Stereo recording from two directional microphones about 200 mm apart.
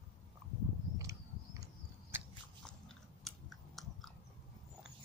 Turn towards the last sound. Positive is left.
turn(degrees=0)  # may be behind; listen again after turning